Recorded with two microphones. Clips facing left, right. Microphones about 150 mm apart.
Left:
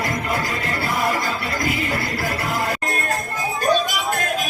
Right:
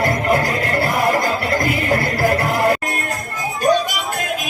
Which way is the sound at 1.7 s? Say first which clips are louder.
Right 5 dB; 55° right (ahead or behind).